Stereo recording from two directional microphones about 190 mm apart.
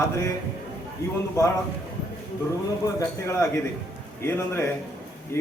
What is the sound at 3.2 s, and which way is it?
A man's voice, 15° left (ahead or behind).